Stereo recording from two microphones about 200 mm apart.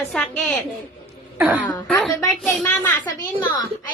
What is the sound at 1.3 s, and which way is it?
Speech, 10° right (ahead or behind).